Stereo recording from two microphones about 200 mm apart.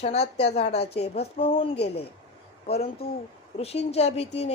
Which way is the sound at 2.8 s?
30° left (ahead or behind).